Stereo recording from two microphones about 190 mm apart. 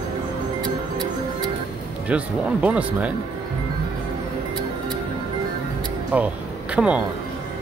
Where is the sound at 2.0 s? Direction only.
5° right (ahead or behind).